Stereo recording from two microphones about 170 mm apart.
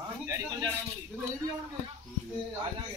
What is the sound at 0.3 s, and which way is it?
Speech, 15° right (ahead or behind).